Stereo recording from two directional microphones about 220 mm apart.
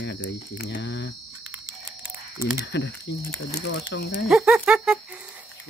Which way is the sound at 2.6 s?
55° left (ahead or behind).